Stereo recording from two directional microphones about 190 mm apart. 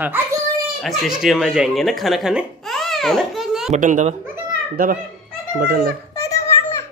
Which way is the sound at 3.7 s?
40° right (ahead or behind).